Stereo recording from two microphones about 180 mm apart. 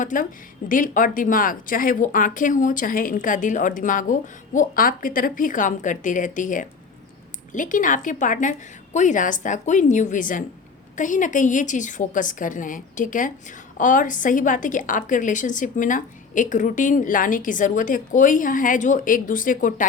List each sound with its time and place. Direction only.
0.0 s a woman's voice: 45° left (ahead or behind)